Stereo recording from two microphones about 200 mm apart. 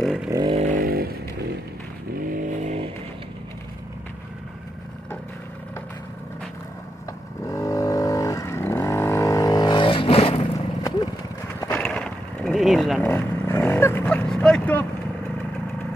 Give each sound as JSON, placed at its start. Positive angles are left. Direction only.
{"t": 0.0, "sound": "vehicle", "side_deg": 0}
{"t": 0.3, "sound": "vehicle", "side_deg": -25}
{"t": 0.7, "sound": "vehicle", "side_deg": -45}
{"t": 2.3, "sound": "vehicle", "side_deg": -35}
{"t": 7.4, "sound": "vehicle", "side_deg": 15}
{"t": 11.6, "sound": "a sound", "side_deg": 10}
{"t": 13.1, "sound": "vehicle", "side_deg": 10}